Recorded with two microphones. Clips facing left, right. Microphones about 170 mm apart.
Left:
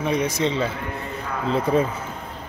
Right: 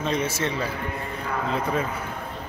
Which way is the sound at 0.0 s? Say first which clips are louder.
Left 3 dB; 15° left (ahead or behind).